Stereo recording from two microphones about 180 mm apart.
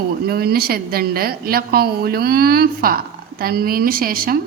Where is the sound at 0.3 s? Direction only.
60° right (ahead or behind).